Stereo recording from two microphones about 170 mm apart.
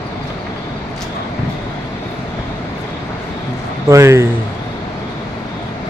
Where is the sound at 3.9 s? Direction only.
15° right (ahead or behind).